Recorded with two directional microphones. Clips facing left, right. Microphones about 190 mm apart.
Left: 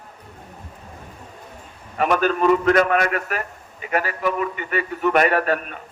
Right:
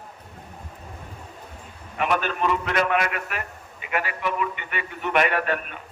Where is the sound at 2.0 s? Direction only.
40° left (ahead or behind).